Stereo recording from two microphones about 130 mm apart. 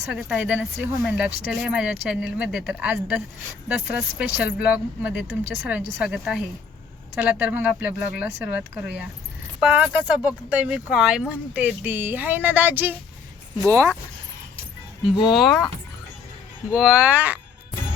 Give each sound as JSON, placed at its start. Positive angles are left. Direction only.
{"t": 0.0, "sound": "speech", "side_deg": -10}
{"t": 15.3, "sound": "speech", "side_deg": 0}
{"t": 16.7, "sound": "speech", "side_deg": -5}